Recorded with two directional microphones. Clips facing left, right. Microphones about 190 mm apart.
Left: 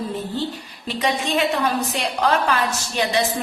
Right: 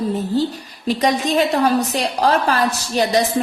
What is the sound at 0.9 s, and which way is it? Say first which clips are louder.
A woman's voice: right 5 dB; 40° right (ahead or behind).